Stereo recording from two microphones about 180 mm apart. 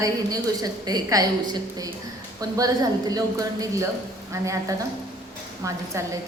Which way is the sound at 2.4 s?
20° right (ahead or behind).